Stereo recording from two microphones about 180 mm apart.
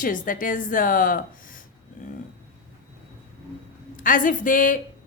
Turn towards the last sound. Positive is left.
turn(degrees=50)  # may be behind; listen again after turning